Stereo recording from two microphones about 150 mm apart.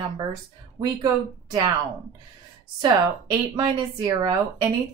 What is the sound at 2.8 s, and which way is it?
Speech, 25° right (ahead or behind).